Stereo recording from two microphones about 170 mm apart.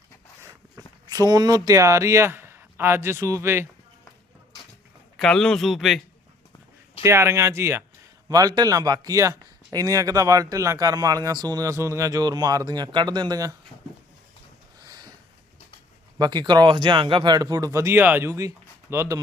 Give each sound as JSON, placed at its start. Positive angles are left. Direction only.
{"t": 0.8, "sound": "speech", "side_deg": -20}
{"t": 5.1, "sound": "speech", "side_deg": 5}
{"t": 7.0, "sound": "speech", "side_deg": -15}
{"t": 14.8, "sound": "a sound", "side_deg": -25}
{"t": 16.1, "sound": "speech", "side_deg": -25}